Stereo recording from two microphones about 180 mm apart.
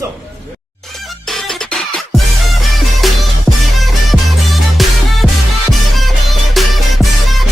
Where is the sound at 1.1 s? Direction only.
Centre (ahead or behind).